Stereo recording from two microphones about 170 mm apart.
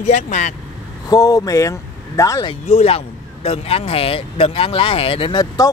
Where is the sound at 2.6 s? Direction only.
40° left (ahead or behind); by 5.7 s 25° left (ahead or behind).